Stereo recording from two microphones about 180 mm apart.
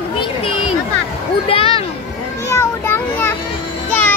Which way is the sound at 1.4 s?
30° left (ahead or behind).